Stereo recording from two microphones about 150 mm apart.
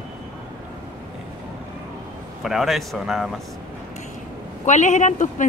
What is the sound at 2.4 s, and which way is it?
Speech, centre (ahead or behind).